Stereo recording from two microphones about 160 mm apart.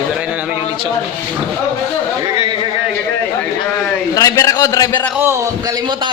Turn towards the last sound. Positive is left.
turn(degrees=15)  # may be behind; listen again after turning